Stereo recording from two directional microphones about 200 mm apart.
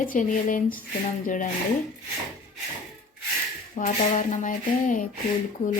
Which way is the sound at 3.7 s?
40° left (ahead or behind).